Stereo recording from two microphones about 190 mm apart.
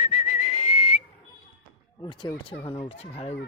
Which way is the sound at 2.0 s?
25° left (ahead or behind).